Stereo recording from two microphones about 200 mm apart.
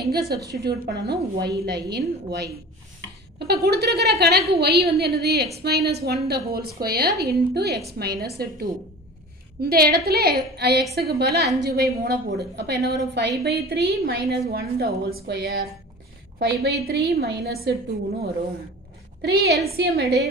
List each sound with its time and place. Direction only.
0.0 s a woman's voice: 50° right (ahead or behind)
9.6 s a woman's voice: 50° right (ahead or behind)
19.2 s a woman's voice: 55° right (ahead or behind)